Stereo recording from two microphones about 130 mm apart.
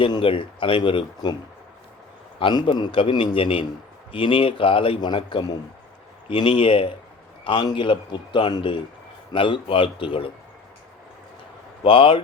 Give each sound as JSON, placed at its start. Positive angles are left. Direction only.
{"t": 0.0, "sound": "a man's voice", "side_deg": 40}
{"t": 2.4, "sound": "a man's voice", "side_deg": 35}
{"t": 11.8, "sound": "a man's voice", "side_deg": 40}